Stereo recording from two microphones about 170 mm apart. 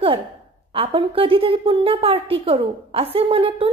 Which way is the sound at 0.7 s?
30° right (ahead or behind).